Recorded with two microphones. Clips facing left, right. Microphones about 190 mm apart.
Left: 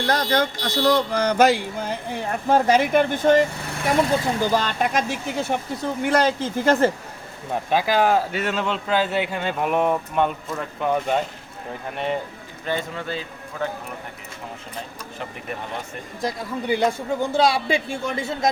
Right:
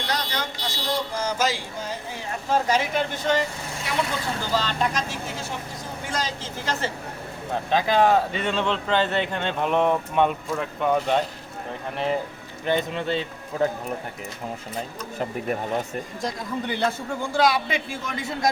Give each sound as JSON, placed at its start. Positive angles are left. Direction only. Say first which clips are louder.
{"t": 0.1, "sound": "speech", "louder": "left 8 dB", "side_deg": 55}
{"t": 7.7, "sound": "speech", "louder": "even", "side_deg": 5}
{"t": 12.6, "sound": "speech", "louder": "right 3 dB", "side_deg": -20}
{"t": 16.2, "sound": "a man's voice", "louder": "left 4 dB", "side_deg": 10}